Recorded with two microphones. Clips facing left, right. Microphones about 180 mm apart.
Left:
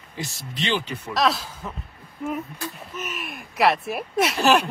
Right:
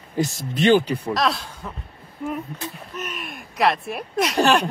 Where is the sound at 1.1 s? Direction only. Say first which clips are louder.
Left 2 dB; centre (ahead or behind).